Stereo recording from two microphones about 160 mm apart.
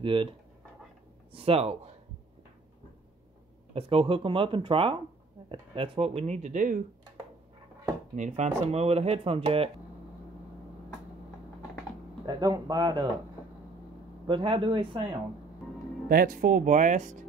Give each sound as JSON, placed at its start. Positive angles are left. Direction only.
{"t": 0.0, "sound": "speech", "side_deg": -35}
{"t": 1.3, "sound": "speech", "side_deg": -40}
{"t": 3.7, "sound": "speech", "side_deg": -35}
{"t": 8.2, "sound": "speech", "side_deg": -45}
{"t": 12.3, "sound": "speech", "side_deg": -25}
{"t": 14.2, "sound": "speech", "side_deg": -30}
{"t": 16.1, "sound": "speech", "side_deg": -65}